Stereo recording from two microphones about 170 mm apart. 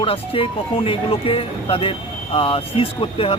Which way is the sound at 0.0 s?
35° left (ahead or behind).